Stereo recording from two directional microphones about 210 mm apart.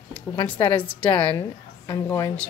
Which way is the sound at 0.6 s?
25° left (ahead or behind).